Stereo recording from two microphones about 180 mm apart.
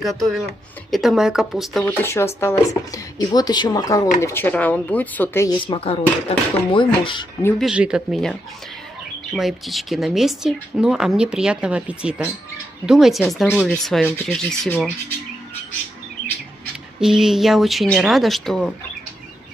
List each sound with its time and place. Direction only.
0.0 s speech: centre (ahead or behind)
2.0 s speech: 15° left (ahead or behind)
5.6 s speech: 30° left (ahead or behind)
7.6 s speech: 5° right (ahead or behind)
17.0 s speech: 5° right (ahead or behind)